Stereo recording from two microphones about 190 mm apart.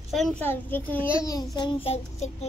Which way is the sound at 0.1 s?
5° left (ahead or behind).